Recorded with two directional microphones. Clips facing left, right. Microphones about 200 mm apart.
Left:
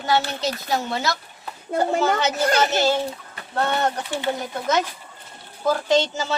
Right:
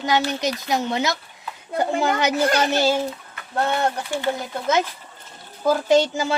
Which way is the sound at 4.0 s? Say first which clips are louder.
Right 1 dB; 20° left (ahead or behind).